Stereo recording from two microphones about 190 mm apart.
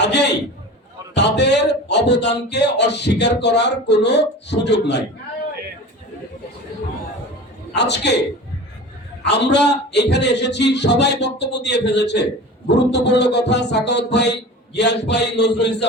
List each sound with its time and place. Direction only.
0.0 s speech: 65° left (ahead or behind)
7.8 s speech: 65° left (ahead or behind)
9.3 s speech: 65° left (ahead or behind)